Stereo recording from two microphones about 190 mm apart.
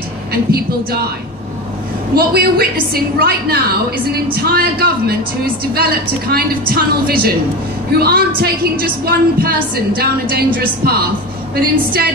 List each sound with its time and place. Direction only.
0.3 s a woman's voice: 55° right (ahead or behind)
2.1 s a woman's voice: 55° right (ahead or behind)